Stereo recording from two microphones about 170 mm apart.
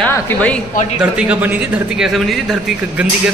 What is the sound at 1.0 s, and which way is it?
Speech, 10° right (ahead or behind).